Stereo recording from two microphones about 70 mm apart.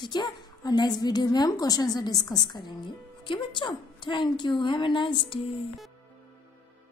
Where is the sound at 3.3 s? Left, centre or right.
Left.